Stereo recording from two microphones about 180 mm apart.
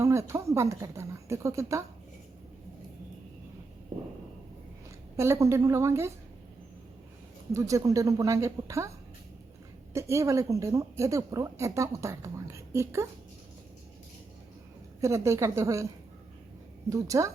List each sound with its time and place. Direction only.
0.0 s speech: 15° right (ahead or behind)
5.1 s a woman's voice: 15° right (ahead or behind)
7.5 s a woman's voice: 15° right (ahead or behind)
9.9 s a woman's voice: 15° right (ahead or behind)
15.0 s a woman's voice: 15° right (ahead or behind)
16.9 s a woman's voice: 15° right (ahead or behind)